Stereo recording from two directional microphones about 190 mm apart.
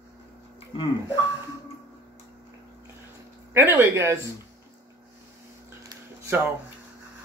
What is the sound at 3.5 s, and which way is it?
Speech, 10° right (ahead or behind).